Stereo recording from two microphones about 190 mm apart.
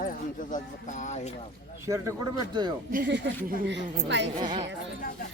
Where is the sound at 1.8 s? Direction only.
15° right (ahead or behind).